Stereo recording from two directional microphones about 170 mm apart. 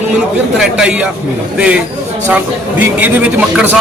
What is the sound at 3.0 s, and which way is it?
Speech, 10° right (ahead or behind).